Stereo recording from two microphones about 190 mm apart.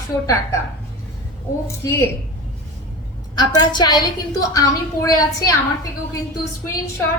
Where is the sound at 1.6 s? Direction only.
15° left (ahead or behind).